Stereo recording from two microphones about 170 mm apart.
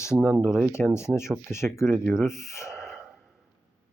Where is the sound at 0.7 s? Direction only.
15° left (ahead or behind).